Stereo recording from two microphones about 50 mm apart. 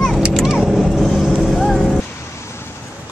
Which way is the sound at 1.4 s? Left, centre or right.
Centre.